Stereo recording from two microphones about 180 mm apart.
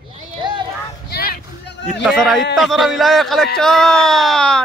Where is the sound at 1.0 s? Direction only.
60° left (ahead or behind).